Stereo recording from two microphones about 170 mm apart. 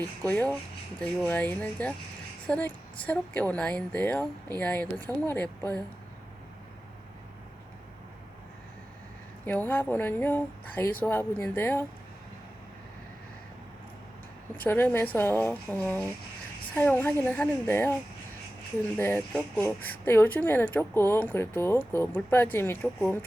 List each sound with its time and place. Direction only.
0.3 s a woman's voice: 10° left (ahead or behind)
9.5 s a woman's voice: 10° left (ahead or behind)
14.6 s a woman's voice: 10° left (ahead or behind)
18.9 s a woman's voice: 10° left (ahead or behind)